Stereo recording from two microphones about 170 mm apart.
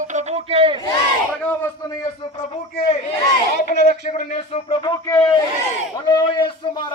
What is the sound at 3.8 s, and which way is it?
A man's voice, 45° left (ahead or behind).